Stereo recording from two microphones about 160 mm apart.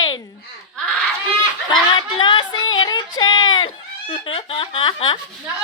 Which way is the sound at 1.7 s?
30° left (ahead or behind).